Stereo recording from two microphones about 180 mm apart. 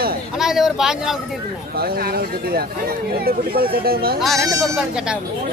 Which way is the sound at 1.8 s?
55° right (ahead or behind).